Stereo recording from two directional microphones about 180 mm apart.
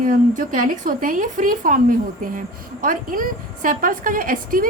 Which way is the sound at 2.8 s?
50° right (ahead or behind).